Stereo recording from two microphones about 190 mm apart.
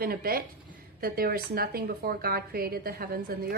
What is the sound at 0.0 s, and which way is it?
Speech, 50° right (ahead or behind).